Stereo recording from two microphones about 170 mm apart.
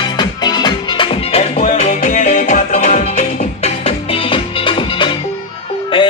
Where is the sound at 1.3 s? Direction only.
45° left (ahead or behind).